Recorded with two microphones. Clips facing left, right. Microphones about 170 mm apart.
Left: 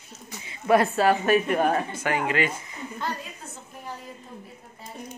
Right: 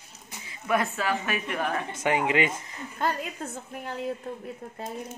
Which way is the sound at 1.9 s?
20° right (ahead or behind).